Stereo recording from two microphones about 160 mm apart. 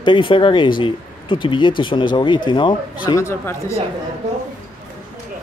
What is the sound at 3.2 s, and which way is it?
Speech, 15° left (ahead or behind).